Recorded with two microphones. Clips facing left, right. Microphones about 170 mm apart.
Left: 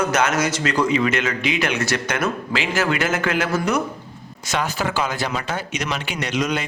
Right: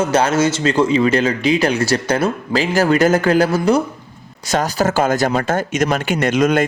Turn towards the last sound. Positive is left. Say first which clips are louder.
# right 8 dB
turn(degrees=-50)  # may be behind; listen again after turning